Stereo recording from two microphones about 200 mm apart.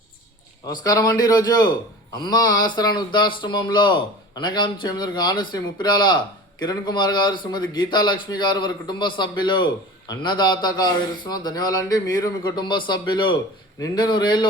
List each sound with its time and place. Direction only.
0.7 s speech: 20° left (ahead or behind)